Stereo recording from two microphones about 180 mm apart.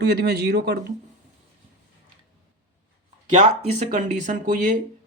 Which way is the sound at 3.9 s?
45° right (ahead or behind).